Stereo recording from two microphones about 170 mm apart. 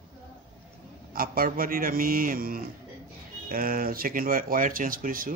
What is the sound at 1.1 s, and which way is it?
A man's voice, 60° right (ahead or behind).